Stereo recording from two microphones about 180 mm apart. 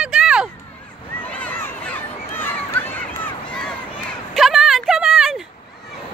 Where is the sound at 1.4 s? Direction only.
10° left (ahead or behind).